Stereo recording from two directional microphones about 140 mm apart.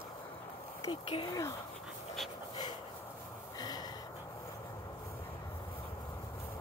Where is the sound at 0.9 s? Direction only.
35° left (ahead or behind).